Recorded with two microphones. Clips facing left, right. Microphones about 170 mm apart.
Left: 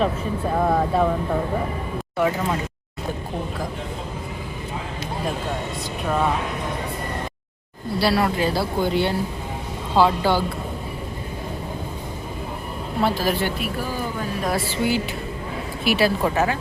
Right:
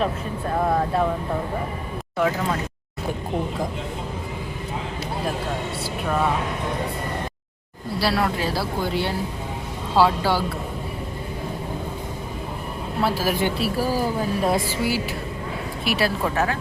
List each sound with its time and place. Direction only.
0.0 s speech: centre (ahead or behind)
2.1 s speech: 10° left (ahead or behind)
7.9 s speech: centre (ahead or behind)
13.0 s a woman's voice: 5° right (ahead or behind)
13.6 s speech: 35° right (ahead or behind)
15.8 s speech: centre (ahead or behind)